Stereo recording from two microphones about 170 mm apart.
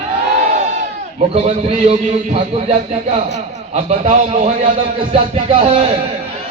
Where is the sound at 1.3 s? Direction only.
40° right (ahead or behind).